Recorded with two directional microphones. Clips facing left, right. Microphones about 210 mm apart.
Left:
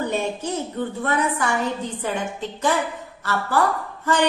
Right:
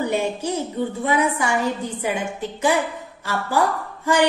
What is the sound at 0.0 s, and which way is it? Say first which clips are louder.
A woman's voice: right 2 dB; 10° right (ahead or behind).